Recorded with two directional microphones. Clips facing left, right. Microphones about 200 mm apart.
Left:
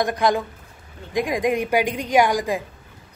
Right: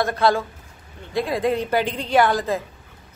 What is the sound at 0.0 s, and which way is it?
Speech, 15° left (ahead or behind).